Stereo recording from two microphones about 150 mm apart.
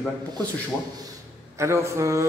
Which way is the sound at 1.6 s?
20° right (ahead or behind).